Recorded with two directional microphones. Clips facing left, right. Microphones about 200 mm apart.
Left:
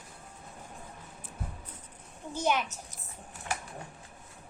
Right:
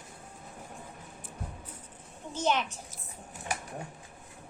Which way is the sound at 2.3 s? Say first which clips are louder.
Even; 10° left (ahead or behind).